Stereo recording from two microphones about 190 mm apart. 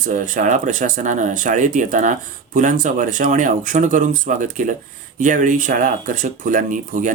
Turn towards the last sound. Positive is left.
turn(degrees=-45)  # may be behind; listen again after turning